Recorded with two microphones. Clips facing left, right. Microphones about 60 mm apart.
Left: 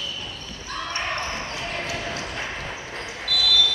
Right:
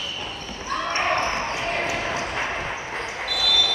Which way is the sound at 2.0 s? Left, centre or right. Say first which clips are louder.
Right 4 dB; right.